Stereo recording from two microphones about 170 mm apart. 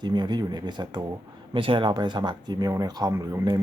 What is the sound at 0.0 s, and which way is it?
Speech, 25° right (ahead or behind).